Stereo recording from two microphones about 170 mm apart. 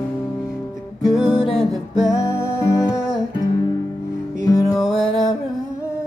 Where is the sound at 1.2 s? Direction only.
30° left (ahead or behind).